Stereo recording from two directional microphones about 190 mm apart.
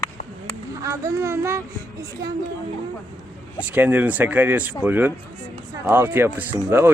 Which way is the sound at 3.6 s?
10° right (ahead or behind).